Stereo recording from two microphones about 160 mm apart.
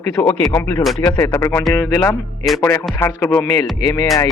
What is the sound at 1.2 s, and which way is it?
Speech, 15° left (ahead or behind).